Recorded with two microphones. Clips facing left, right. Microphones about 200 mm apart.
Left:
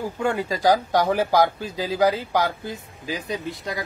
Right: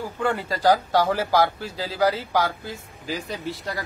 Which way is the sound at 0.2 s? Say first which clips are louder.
Even; 15° left (ahead or behind).